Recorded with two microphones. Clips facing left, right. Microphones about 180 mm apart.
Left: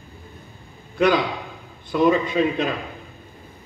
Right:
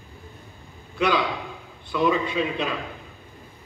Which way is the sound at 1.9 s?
45° left (ahead or behind).